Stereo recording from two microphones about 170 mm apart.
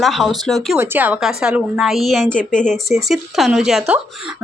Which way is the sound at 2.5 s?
50° left (ahead or behind).